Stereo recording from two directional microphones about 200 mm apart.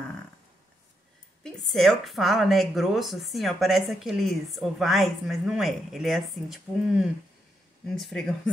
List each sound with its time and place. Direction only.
1.4 s a woman's voice: centre (ahead or behind)